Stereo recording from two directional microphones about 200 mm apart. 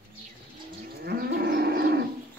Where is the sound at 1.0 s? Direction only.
50° right (ahead or behind).